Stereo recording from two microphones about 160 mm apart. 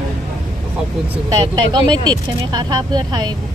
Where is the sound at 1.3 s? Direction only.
30° right (ahead or behind).